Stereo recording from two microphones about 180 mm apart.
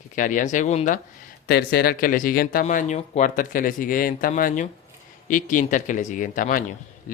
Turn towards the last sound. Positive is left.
turn(degrees=45)  # may be behind; listen again after turning